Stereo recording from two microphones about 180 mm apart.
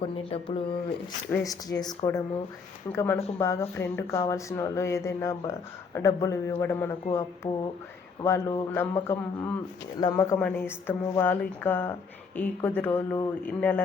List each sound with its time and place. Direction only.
0.0 s speech: 30° left (ahead or behind)
1.5 s speech: 20° left (ahead or behind)